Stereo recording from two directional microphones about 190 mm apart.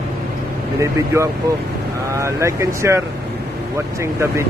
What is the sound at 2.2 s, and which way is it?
Speech, 15° right (ahead or behind).